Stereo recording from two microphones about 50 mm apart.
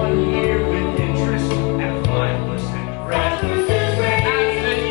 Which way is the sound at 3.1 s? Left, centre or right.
Centre.